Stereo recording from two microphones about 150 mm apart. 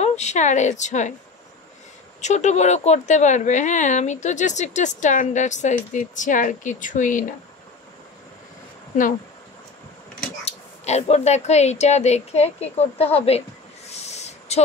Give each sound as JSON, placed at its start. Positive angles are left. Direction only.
{"t": 0.0, "sound": "speech", "side_deg": 50}
{"t": 2.2, "sound": "speech", "side_deg": 50}
{"t": 10.4, "sound": "speech", "side_deg": 45}
{"t": 13.8, "sound": "owl", "side_deg": 45}